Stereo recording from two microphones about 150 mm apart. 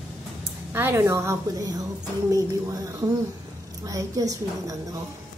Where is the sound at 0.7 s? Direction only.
15° right (ahead or behind).